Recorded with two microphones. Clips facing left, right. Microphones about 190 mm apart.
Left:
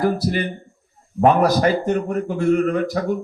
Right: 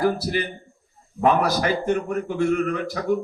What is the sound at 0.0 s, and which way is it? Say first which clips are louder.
A man's voice: left 2 dB; 50° left (ahead or behind).